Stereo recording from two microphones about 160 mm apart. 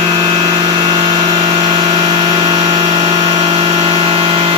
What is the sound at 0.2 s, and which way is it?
Vehicle, 25° right (ahead or behind).